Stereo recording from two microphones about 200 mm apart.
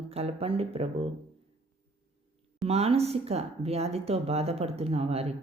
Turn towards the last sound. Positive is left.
turn(degrees=-30)  # may be behind; listen again after turning